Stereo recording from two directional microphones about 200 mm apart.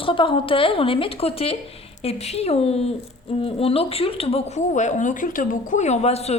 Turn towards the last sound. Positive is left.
turn(degrees=30)  # may be behind; listen again after turning